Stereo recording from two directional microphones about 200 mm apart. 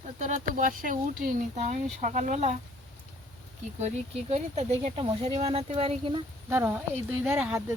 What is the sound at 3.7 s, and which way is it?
Speech, 35° right (ahead or behind).